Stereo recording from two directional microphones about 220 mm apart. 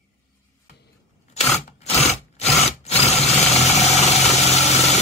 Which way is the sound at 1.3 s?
30° left (ahead or behind).